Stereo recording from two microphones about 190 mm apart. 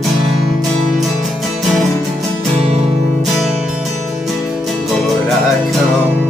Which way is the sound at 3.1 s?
Centre (ahead or behind).